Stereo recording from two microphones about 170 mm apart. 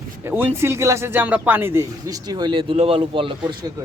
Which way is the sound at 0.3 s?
15° right (ahead or behind).